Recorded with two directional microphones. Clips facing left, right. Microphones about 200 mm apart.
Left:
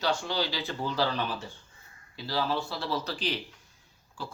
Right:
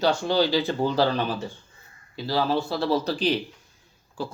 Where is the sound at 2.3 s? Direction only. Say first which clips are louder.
Right 6 dB; 30° right (ahead or behind).